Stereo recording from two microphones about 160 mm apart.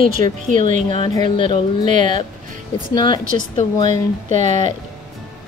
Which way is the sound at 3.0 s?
30° left (ahead or behind).